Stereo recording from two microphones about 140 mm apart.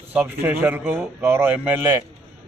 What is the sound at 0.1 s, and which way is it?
A man's voice, 10° right (ahead or behind).